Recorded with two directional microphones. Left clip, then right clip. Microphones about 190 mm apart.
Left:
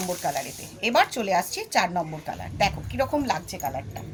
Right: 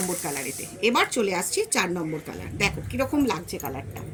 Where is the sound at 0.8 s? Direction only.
45° left (ahead or behind).